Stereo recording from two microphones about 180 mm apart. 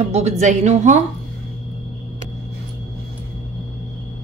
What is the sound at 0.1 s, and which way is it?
Speech, 40° right (ahead or behind).